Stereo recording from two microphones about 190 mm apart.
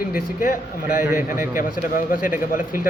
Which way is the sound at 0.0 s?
45° left (ahead or behind).